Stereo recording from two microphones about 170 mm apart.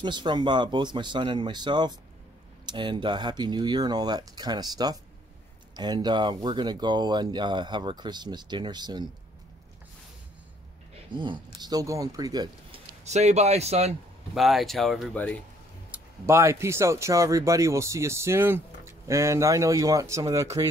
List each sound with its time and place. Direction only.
0.0 s speech: 25° right (ahead or behind)
11.1 s speech: 25° right (ahead or behind)
13.0 s speech: 40° right (ahead or behind)
14.3 s speech: centre (ahead or behind)
16.3 s speech: 15° right (ahead or behind)